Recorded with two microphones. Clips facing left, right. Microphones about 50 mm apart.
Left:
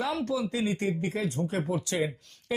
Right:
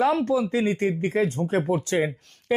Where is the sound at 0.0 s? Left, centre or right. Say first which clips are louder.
Right 8 dB; right.